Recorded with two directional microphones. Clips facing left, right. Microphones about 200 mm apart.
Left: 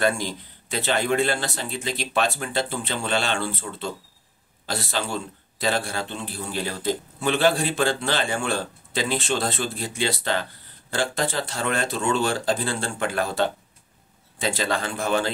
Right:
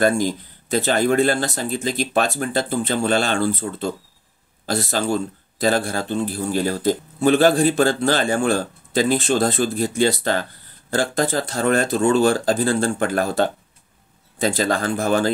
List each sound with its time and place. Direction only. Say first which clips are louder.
0.0 s a man's voice: right 6 dB; 45° right (ahead or behind)